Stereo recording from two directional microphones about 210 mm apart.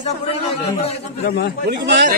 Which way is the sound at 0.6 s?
25° left (ahead or behind).